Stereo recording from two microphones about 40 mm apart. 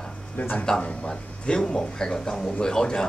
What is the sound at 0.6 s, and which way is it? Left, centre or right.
Speech, left.